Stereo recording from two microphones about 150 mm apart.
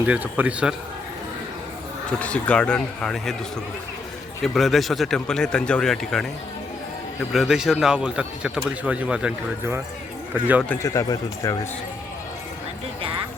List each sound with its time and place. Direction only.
0.0 s speech: 10° right (ahead or behind)
2.1 s speech: 10° left (ahead or behind)
4.4 s speech: centre (ahead or behind)
7.3 s speech: 5° right (ahead or behind)
10.8 s speech: 20° left (ahead or behind)